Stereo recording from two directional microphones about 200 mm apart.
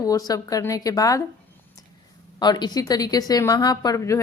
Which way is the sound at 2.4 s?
20° left (ahead or behind).